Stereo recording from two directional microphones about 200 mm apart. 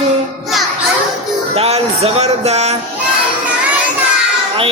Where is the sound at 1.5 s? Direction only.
30° right (ahead or behind).